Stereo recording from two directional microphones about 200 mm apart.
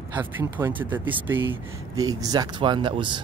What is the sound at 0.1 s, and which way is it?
Speech, 10° right (ahead or behind).